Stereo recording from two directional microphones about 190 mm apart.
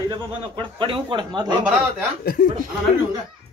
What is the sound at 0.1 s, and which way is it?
Speech, 25° right (ahead or behind).